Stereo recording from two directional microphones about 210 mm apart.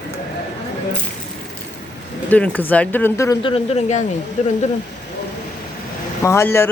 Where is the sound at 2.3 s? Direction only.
5° left (ahead or behind).